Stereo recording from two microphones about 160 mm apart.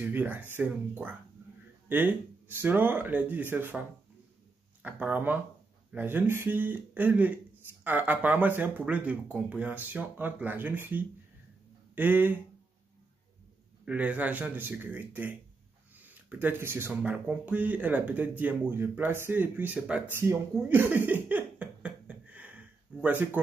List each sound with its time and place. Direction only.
0.0 s speech: 10° right (ahead or behind)
4.8 s speech: 10° right (ahead or behind)
13.8 s speech: 10° right (ahead or behind)